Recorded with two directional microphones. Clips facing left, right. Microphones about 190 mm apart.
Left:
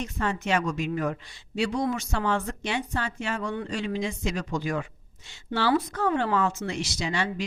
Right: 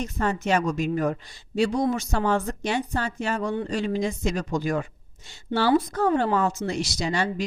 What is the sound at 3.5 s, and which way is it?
Speech, 30° right (ahead or behind).